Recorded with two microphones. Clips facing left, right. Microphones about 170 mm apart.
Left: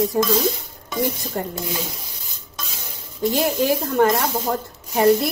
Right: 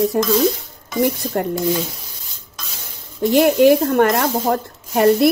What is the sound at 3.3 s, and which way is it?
Speech, 70° right (ahead or behind).